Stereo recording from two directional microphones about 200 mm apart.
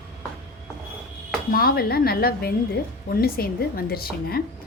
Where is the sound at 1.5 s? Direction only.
50° left (ahead or behind).